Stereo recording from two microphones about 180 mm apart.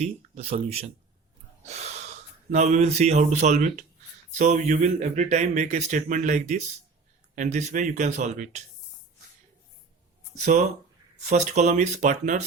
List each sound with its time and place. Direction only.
0.0 s speech: 35° right (ahead or behind)
2.5 s speech: 40° right (ahead or behind)
10.3 s speech: 40° right (ahead or behind)